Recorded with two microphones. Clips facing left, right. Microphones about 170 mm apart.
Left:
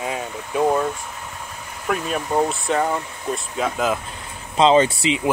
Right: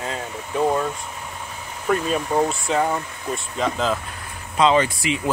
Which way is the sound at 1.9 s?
5° left (ahead or behind).